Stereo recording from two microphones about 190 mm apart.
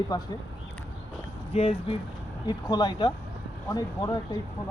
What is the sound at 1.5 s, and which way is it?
Speech, 30° left (ahead or behind).